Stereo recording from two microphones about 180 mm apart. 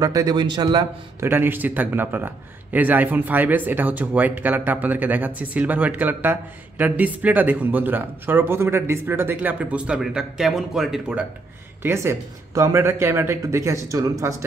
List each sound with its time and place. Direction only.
0.0 s a man's voice: 20° right (ahead or behind)
1.3 s a man's voice: 10° right (ahead or behind)
11.8 s a man's voice: 15° right (ahead or behind)